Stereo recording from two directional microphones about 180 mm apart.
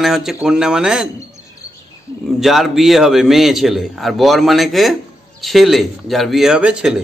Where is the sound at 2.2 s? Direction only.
Centre (ahead or behind).